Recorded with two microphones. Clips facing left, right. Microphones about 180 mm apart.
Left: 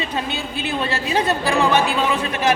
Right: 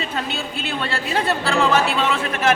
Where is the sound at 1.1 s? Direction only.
15° left (ahead or behind).